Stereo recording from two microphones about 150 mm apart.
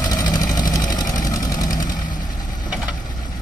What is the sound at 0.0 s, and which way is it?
Vehicle, 25° left (ahead or behind).